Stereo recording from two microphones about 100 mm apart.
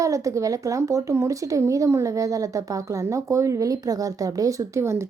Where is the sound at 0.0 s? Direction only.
30° right (ahead or behind).